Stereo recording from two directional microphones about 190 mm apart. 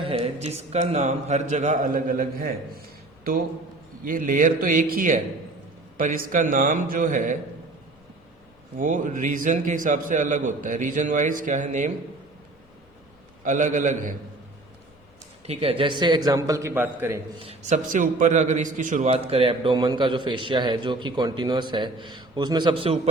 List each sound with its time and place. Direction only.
0.0 s a man's voice: 30° right (ahead or behind); by 2.8 s 50° right (ahead or behind)
4.0 s a man's voice: 45° right (ahead or behind)
8.7 s a man's voice: 45° right (ahead or behind)
13.4 s a man's voice: 40° right (ahead or behind)
15.4 s a man's voice: 30° right (ahead or behind); by 17.2 s 10° right (ahead or behind)
17.4 s a man's voice: 35° right (ahead or behind)